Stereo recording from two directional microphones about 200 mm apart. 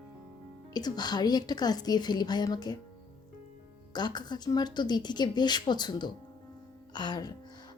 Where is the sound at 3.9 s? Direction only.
20° left (ahead or behind).